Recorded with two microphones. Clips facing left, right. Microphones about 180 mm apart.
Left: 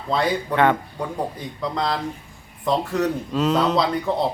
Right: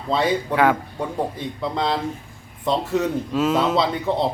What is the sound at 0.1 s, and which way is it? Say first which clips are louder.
Speech: right 1 dB; 5° right (ahead or behind).